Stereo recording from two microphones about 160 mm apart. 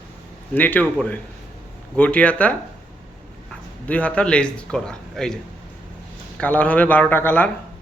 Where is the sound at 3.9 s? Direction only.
10° left (ahead or behind).